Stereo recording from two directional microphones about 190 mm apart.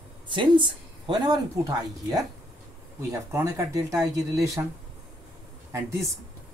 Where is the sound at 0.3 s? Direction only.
25° right (ahead or behind).